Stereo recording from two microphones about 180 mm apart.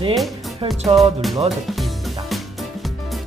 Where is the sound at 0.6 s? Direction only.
30° right (ahead or behind).